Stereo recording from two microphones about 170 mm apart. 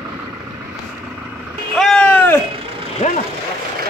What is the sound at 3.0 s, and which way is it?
Vehicle, 40° left (ahead or behind).